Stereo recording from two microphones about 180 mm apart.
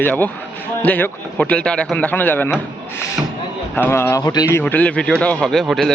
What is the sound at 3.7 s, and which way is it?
Speech, 10° left (ahead or behind).